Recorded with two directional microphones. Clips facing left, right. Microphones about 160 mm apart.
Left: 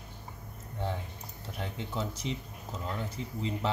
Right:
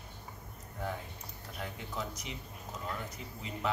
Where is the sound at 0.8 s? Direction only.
30° left (ahead or behind).